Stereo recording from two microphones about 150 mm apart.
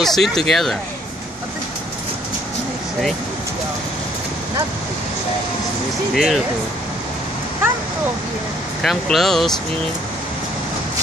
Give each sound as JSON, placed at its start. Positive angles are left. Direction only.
{"t": 0.0, "sound": "speech", "side_deg": 0}
{"t": 6.1, "sound": "speech", "side_deg": 0}
{"t": 8.8, "sound": "speech", "side_deg": 0}